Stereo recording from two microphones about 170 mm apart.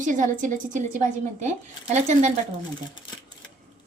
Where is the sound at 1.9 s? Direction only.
40° right (ahead or behind).